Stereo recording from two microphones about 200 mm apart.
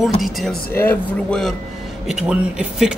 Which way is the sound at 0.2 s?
Centre (ahead or behind).